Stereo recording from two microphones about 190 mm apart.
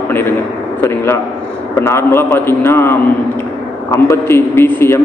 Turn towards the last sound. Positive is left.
turn(degrees=15)  # may be behind; listen again after turning